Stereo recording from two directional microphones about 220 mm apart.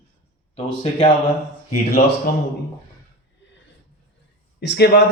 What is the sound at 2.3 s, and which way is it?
Speech, 45° left (ahead or behind).